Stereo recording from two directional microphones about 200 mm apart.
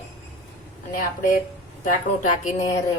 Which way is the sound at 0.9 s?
40° left (ahead or behind).